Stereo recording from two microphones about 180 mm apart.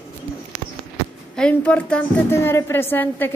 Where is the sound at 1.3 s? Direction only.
5° left (ahead or behind).